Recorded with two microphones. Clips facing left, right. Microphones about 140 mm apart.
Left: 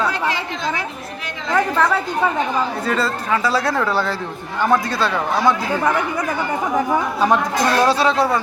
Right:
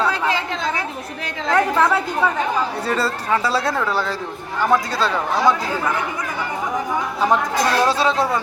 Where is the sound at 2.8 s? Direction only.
35° right (ahead or behind).